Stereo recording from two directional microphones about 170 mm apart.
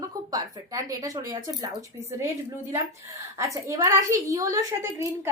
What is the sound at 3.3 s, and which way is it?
A woman's voice, 20° right (ahead or behind).